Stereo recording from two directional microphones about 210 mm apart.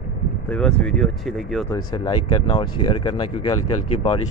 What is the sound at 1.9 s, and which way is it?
Speech, 20° left (ahead or behind).